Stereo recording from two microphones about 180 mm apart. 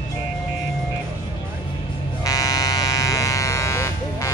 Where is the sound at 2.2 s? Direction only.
20° left (ahead or behind).